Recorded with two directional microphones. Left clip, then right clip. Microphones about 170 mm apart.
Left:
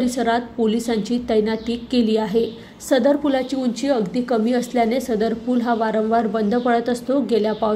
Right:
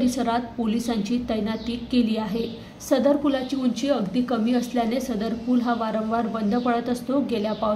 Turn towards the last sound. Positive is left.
turn(degrees=35)  # may be behind; listen again after turning